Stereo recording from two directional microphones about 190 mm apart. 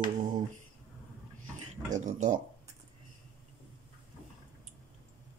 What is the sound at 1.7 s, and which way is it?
Speech, 40° right (ahead or behind).